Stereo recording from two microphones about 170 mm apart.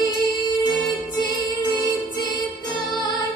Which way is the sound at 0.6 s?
25° left (ahead or behind).